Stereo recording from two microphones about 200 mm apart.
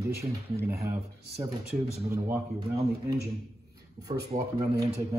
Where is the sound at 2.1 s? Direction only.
15° right (ahead or behind).